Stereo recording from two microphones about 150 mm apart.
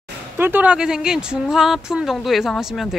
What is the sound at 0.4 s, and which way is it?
Speech, 10° right (ahead or behind).